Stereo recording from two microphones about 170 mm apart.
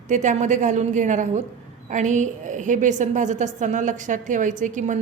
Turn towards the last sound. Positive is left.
turn(degrees=-45)  # may be behind; listen again after turning